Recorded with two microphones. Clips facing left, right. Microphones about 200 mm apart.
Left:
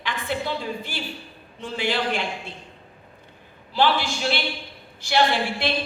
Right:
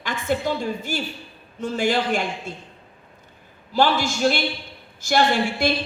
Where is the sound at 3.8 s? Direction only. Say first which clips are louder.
Right 2 dB; 45° right (ahead or behind).